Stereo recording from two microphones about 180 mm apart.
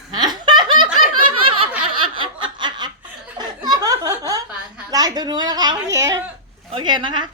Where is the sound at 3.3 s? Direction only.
20° right (ahead or behind).